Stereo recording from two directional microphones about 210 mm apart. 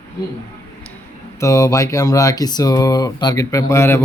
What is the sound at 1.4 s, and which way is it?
Speech, 15° left (ahead or behind).